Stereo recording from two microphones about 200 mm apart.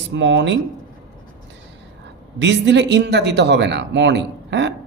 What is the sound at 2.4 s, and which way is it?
Speech, 60° right (ahead or behind).